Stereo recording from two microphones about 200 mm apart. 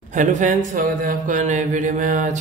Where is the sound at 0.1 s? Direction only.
40° right (ahead or behind).